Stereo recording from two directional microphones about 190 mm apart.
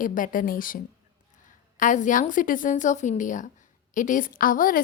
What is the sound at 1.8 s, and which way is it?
A woman's voice, 40° left (ahead or behind).